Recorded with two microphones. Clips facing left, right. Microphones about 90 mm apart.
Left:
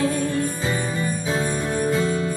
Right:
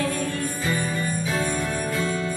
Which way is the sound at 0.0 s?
25° left (ahead or behind).